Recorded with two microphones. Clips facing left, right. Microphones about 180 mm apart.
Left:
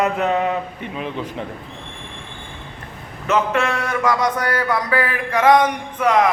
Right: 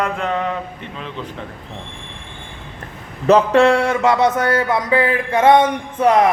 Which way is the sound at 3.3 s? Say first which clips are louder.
Right 8 dB; 35° right (ahead or behind).